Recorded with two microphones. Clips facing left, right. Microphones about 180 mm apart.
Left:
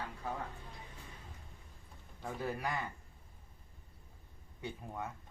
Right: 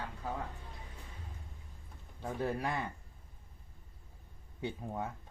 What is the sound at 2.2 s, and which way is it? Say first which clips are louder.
Speech: right 4 dB; 30° right (ahead or behind).